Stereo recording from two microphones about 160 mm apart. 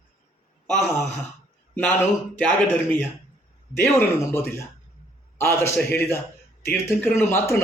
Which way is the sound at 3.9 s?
15° left (ahead or behind).